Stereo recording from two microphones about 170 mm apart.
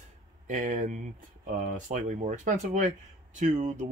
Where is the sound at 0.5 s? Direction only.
50° right (ahead or behind).